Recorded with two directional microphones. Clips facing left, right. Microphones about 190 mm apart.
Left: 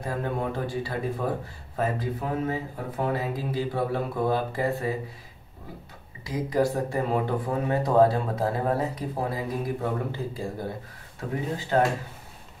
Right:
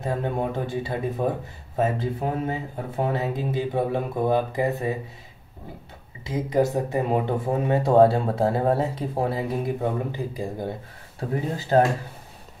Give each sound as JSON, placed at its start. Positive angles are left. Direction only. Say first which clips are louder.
{"t": 0.0, "sound": "speech", "louder": "right 3 dB", "side_deg": -25}
{"t": 6.2, "sound": "speech", "louder": "right 2 dB", "side_deg": -25}
{"t": 11.1, "sound": "speech", "louder": "right 3 dB", "side_deg": -35}